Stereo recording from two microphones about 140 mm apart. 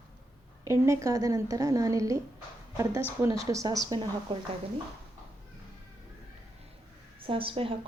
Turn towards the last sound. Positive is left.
turn(degrees=-40)  # may be behind; listen again after turning